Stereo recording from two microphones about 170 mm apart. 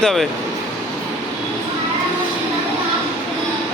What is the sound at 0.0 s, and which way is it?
Speech, centre (ahead or behind).